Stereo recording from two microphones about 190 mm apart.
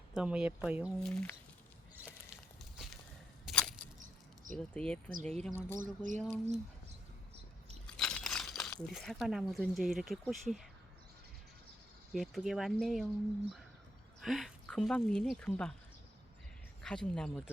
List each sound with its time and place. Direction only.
0.1 s speech: 5° right (ahead or behind)
1.0 s speech: 5° left (ahead or behind)
2.0 s a sound: centre (ahead or behind)
4.5 s speech: 5° left (ahead or behind)
5.8 s speech: 45° right (ahead or behind)
7.9 s speech: 5° left (ahead or behind)
12.1 s speech: centre (ahead or behind)
14.2 s speech: centre (ahead or behind)
16.8 s speech: 5° left (ahead or behind)